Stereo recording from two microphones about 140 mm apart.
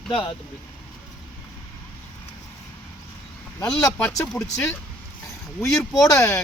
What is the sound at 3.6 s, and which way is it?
Speech, 5° left (ahead or behind).